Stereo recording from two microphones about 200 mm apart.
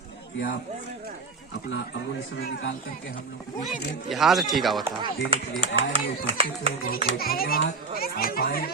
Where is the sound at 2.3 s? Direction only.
65° left (ahead or behind).